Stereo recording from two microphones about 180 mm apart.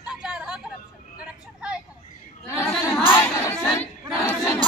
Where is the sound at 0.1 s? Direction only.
5° right (ahead or behind).